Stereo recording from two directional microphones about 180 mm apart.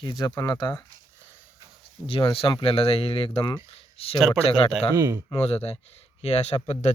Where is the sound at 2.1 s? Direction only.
30° left (ahead or behind).